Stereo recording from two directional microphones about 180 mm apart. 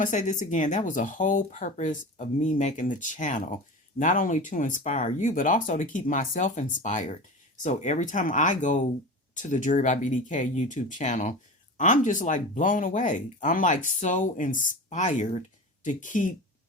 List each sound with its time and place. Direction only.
0.0 s speech: 45° left (ahead or behind)